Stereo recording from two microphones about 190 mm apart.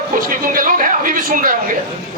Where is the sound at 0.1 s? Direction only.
45° right (ahead or behind).